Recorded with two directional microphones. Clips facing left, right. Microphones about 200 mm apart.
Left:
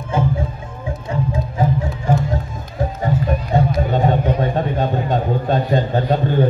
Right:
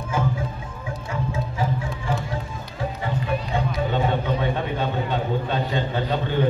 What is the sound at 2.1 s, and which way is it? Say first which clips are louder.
Music: left 8 dB; 40° left (ahead or behind).